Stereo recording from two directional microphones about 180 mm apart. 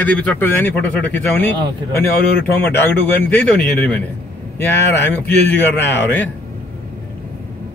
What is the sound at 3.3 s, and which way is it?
Speech, 10° left (ahead or behind).